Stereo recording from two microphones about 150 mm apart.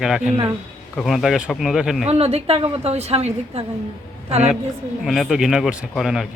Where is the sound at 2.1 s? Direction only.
40° right (ahead or behind).